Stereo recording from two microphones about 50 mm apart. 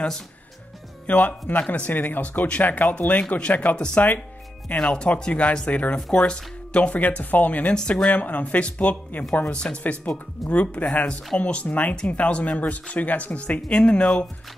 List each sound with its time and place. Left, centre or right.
1.0 s speech: left